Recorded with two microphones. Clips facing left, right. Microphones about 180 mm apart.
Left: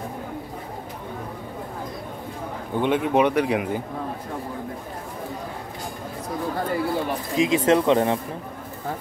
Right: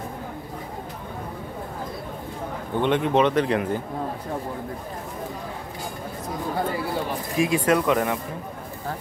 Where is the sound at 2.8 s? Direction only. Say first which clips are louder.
Even; 10° left (ahead or behind).